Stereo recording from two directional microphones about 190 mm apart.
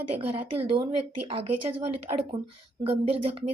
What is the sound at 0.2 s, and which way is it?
Speech, 30° right (ahead or behind).